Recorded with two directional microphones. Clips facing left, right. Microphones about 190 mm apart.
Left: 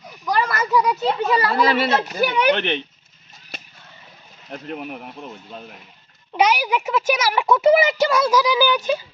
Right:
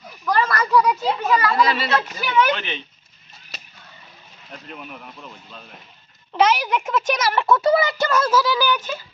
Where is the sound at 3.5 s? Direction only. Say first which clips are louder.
Left 4 dB; 55° left (ahead or behind).